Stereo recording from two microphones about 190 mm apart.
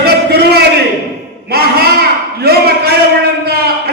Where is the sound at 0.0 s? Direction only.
55° right (ahead or behind).